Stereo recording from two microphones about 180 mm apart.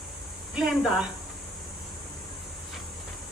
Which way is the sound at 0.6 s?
5° right (ahead or behind).